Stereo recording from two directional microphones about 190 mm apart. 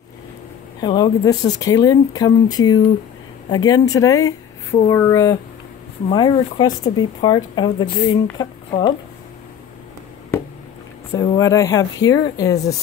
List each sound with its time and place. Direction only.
0.7 s speech: 20° left (ahead or behind)
11.1 s speech: 20° left (ahead or behind)